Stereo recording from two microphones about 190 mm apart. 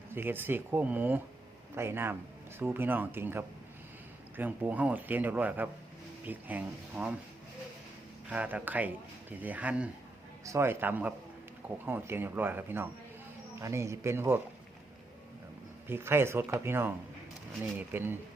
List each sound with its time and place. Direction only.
0.1 s speech: 10° right (ahead or behind)
8.3 s speech: 5° right (ahead or behind)
15.9 s speech: 10° right (ahead or behind)